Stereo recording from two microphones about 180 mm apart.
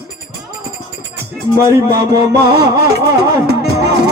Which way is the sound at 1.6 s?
15° right (ahead or behind).